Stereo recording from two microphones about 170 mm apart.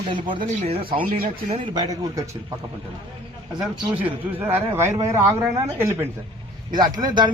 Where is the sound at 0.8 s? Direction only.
55° right (ahead or behind).